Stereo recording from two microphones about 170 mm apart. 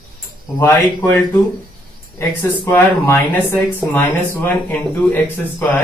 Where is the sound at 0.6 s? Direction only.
15° left (ahead or behind).